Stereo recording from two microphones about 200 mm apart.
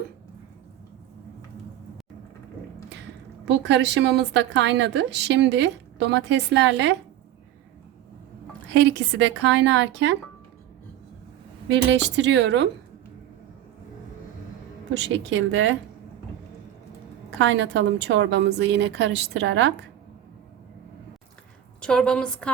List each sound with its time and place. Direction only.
3.4 s a woman's voice: 60° right (ahead or behind)
8.7 s a woman's voice: 65° right (ahead or behind)
11.7 s a woman's voice: 60° right (ahead or behind)
14.9 s a woman's voice: 60° right (ahead or behind)
17.3 s a woman's voice: 65° right (ahead or behind)
21.8 s a woman's voice: 5° left (ahead or behind)